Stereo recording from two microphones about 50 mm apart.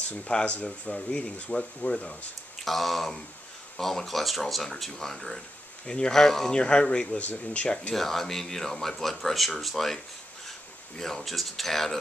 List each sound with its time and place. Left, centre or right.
0.3 s speech: left
2.6 s speech: centre; by 7.9 s left
7.9 s speech: centre
11.0 s speech: centre